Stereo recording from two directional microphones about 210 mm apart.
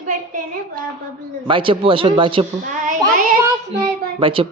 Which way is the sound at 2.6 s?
35° right (ahead or behind).